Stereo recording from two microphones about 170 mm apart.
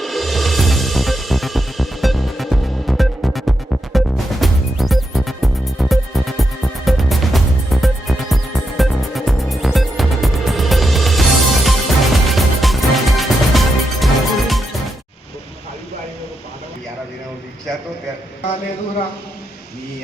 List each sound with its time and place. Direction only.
0.0 s music: centre (ahead or behind)